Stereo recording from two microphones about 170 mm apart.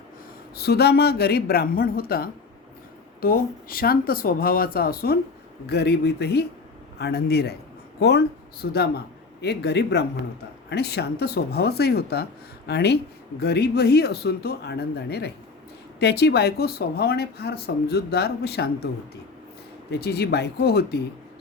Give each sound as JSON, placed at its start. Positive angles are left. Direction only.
{"t": 0.5, "sound": "speech", "side_deg": 70}
{"t": 5.6, "sound": "a man's voice", "side_deg": 75}
{"t": 19.9, "sound": "speech", "side_deg": 70}